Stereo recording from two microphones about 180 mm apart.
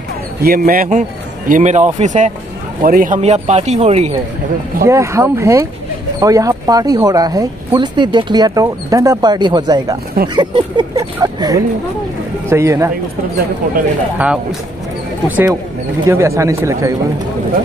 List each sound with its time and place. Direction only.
0.4 s speech: 55° right (ahead or behind)
3.2 s speech: 35° right (ahead or behind)
4.8 s speech: 15° right (ahead or behind)
14.1 s speech: 5° right (ahead or behind)